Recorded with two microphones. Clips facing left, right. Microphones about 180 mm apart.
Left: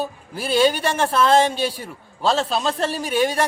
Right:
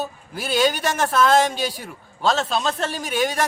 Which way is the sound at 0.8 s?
30° left (ahead or behind).